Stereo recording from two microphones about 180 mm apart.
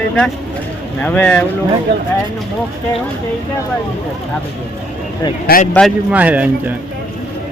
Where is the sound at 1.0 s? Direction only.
10° left (ahead or behind).